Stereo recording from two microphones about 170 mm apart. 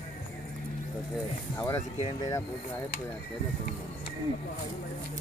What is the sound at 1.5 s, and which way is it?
Speech, 15° left (ahead or behind).